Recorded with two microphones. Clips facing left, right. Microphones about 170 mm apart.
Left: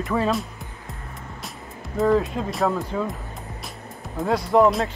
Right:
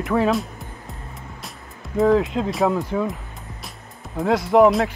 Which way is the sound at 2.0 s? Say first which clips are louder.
Right 3 dB; 20° right (ahead or behind).